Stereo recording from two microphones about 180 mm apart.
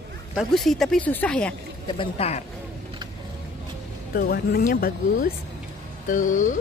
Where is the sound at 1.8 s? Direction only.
30° left (ahead or behind).